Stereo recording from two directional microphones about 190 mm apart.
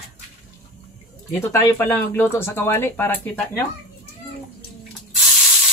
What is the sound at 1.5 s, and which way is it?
Speech, 15° left (ahead or behind).